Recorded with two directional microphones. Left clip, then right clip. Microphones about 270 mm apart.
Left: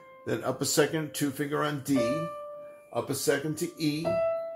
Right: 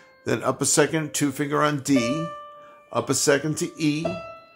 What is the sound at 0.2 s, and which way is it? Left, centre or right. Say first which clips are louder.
Speech: right 6 dB; right.